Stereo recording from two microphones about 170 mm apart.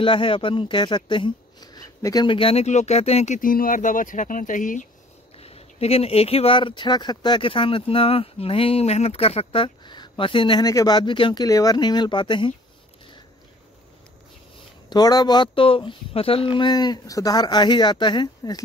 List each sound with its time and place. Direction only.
0.0 s speech: 30° left (ahead or behind)
3.3 s speech: 55° left (ahead or behind)
5.4 s speech: 35° left (ahead or behind)
14.9 s speech: 25° left (ahead or behind)